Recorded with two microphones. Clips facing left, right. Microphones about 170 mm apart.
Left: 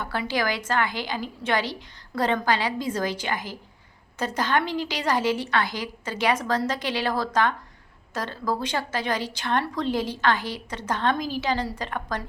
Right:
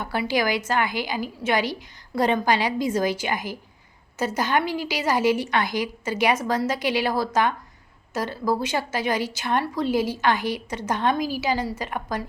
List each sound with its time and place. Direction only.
0.0 s a woman's voice: 10° right (ahead or behind)